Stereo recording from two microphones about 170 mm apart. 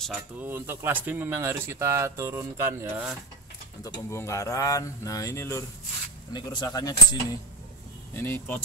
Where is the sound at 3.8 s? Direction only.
15° left (ahead or behind).